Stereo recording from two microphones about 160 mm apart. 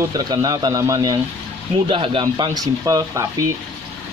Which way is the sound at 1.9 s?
35° right (ahead or behind).